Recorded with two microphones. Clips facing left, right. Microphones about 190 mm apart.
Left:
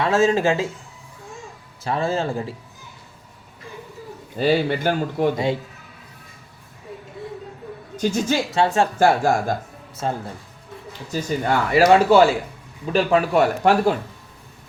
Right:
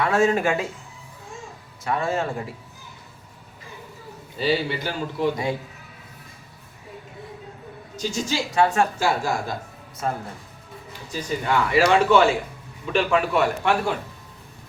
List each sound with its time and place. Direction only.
0.0 s speech: 25° left (ahead or behind)
1.8 s speech: 30° left (ahead or behind)
4.4 s speech: 50° left (ahead or behind)
7.9 s a woman's voice: 55° left (ahead or behind)
8.5 s speech: 25° left (ahead or behind)
9.0 s speech: 50° left (ahead or behind)
10.0 s speech: 30° left (ahead or behind)
11.1 s speech: 45° left (ahead or behind)